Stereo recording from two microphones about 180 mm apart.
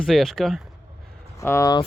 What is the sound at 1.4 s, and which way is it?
Speech, 15° left (ahead or behind).